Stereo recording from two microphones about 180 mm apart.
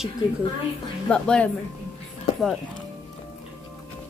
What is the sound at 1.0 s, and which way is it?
Speech, 5° left (ahead or behind).